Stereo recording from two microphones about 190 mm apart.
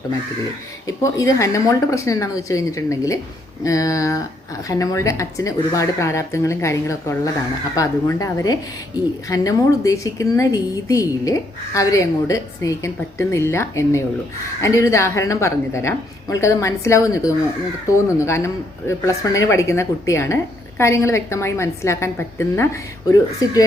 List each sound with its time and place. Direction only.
0.9 s a woman's voice: 15° left (ahead or behind)